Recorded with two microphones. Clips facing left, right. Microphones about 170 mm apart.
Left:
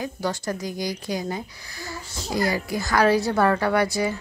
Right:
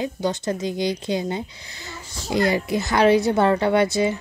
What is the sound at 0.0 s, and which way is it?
Speech, 20° right (ahead or behind).